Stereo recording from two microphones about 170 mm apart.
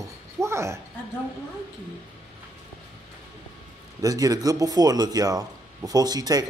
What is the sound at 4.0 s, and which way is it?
Speech, 20° right (ahead or behind).